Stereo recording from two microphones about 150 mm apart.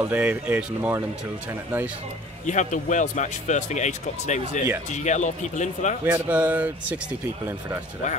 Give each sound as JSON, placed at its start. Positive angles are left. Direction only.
{"t": 0.0, "sound": "speech", "side_deg": -10}
{"t": 2.4, "sound": "speech", "side_deg": 55}
{"t": 6.0, "sound": "speech", "side_deg": -10}